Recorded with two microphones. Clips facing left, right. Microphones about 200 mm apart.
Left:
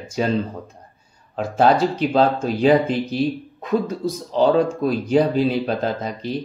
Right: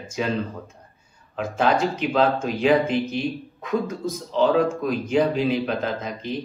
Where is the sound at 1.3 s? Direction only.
35° left (ahead or behind).